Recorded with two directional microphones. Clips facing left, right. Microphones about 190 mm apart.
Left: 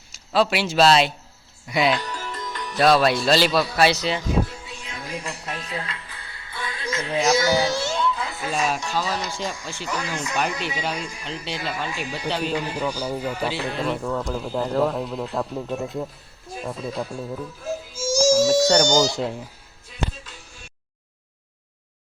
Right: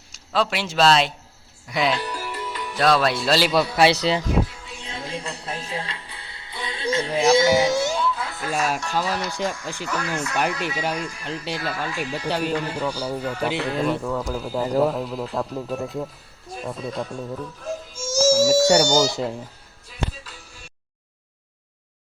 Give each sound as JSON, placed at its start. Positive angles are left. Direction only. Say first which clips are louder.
{"t": 0.1, "sound": "a man's voice", "louder": "left 3 dB", "side_deg": 5}
{"t": 2.0, "sound": "music", "louder": "right 2 dB", "side_deg": -10}
{"t": 2.7, "sound": "speech", "louder": "left 2 dB", "side_deg": 5}
{"t": 4.8, "sound": "music", "louder": "right 2 dB", "side_deg": -25}
{"t": 7.3, "sound": "speech", "louder": "right 4 dB", "side_deg": -25}
{"t": 7.9, "sound": "music", "louder": "even", "side_deg": -5}
{"t": 8.5, "sound": "speech", "louder": "right 1 dB", "side_deg": -10}
{"t": 9.1, "sound": "speech", "louder": "right 2 dB", "side_deg": 15}
{"t": 12.3, "sound": "speech", "louder": "right 1 dB", "side_deg": -10}
{"t": 12.5, "sound": "speech", "louder": "even", "side_deg": 10}
{"t": 13.4, "sound": "speech", "louder": "right 2 dB", "side_deg": -15}
{"t": 13.8, "sound": "speech", "louder": "right 1 dB", "side_deg": -5}
{"t": 19.1, "sound": "speech", "louder": "even", "side_deg": 0}